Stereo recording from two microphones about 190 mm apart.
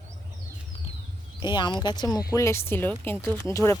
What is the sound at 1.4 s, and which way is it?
Speech, 25° left (ahead or behind).